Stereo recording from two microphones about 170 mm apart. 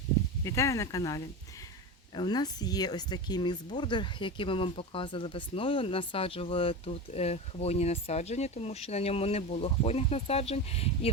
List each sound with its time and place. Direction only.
0.4 s speech: 15° left (ahead or behind); by 11.1 s 35° left (ahead or behind)